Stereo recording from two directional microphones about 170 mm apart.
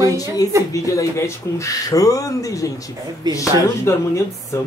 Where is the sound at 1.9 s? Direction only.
20° left (ahead or behind).